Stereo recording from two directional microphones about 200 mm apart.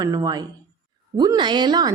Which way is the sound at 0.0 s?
20° right (ahead or behind).